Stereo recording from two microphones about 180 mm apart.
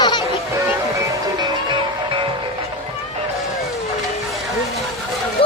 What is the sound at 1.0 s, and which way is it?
Music, 25° right (ahead or behind).